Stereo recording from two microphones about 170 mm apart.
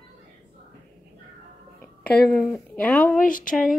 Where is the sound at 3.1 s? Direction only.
55° left (ahead or behind).